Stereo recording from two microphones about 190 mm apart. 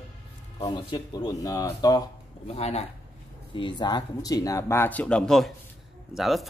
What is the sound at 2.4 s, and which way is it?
Speech, 35° left (ahead or behind).